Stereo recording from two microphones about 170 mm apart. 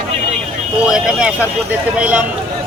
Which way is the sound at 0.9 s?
5° right (ahead or behind).